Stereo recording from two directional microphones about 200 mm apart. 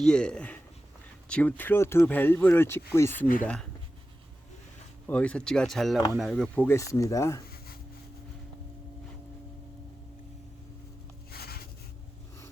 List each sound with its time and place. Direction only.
0.0 s speech: 5° left (ahead or behind)
5.0 s speech: 5° left (ahead or behind)
6.7 s speech: 15° left (ahead or behind)
11.3 s writing: 50° left (ahead or behind)